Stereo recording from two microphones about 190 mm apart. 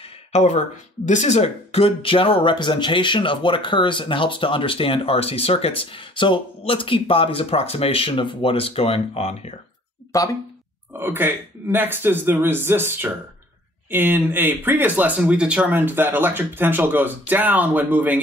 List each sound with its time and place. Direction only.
0.3 s speech: 40° left (ahead or behind)
10.1 s speech: 15° left (ahead or behind)
10.9 s speech: 10° right (ahead or behind)